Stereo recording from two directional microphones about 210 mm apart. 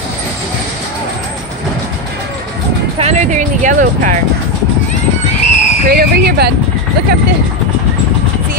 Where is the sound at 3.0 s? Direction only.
35° right (ahead or behind).